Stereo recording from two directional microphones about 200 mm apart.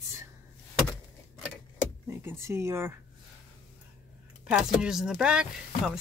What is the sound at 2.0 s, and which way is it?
Speech, 15° right (ahead or behind).